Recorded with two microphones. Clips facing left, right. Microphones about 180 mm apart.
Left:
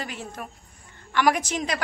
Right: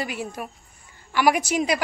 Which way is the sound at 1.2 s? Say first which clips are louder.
Right 2 dB; 10° right (ahead or behind).